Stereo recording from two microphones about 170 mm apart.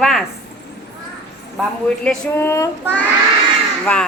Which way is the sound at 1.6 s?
Centre (ahead or behind).